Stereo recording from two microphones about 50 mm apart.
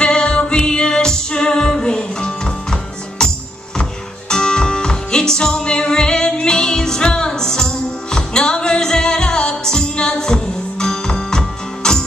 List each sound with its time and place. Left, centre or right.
0.0 s music: centre
4.3 s music: centre